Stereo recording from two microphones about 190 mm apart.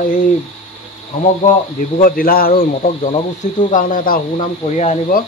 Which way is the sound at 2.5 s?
35° left (ahead or behind).